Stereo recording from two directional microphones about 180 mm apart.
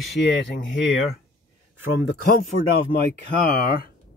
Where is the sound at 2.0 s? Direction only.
55° left (ahead or behind).